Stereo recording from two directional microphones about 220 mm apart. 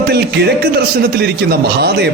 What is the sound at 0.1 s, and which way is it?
Speech, 50° right (ahead or behind).